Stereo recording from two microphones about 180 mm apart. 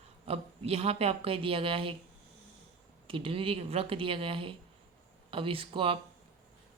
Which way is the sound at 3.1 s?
30° right (ahead or behind).